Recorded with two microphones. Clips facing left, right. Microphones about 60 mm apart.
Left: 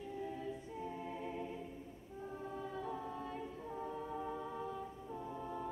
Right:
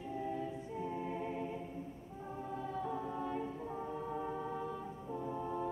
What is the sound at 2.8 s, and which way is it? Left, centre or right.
A capella, centre.